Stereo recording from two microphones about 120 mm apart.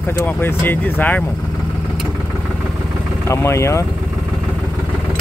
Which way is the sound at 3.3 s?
25° left (ahead or behind).